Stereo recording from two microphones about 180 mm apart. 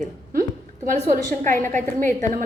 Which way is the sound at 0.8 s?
50° right (ahead or behind).